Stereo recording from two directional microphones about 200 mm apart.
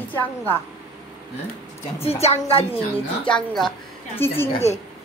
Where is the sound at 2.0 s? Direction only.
30° left (ahead or behind).